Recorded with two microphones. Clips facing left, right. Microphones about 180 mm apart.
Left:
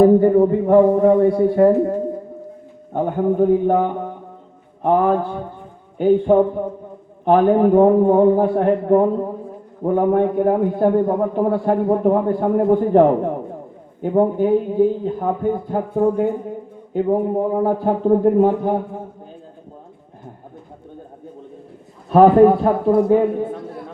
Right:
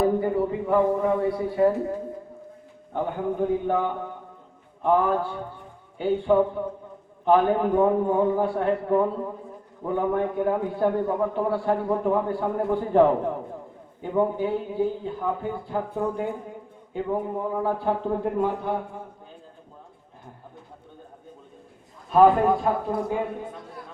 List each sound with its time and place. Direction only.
0.0 s a man's voice: 45° left (ahead or behind)
6.0 s a man's voice: 45° left (ahead or behind)
14.1 s a man's voice: 45° left (ahead or behind)
22.1 s a man's voice: 60° left (ahead or behind)